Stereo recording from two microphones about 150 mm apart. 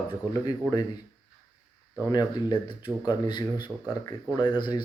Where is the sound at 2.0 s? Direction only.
25° left (ahead or behind).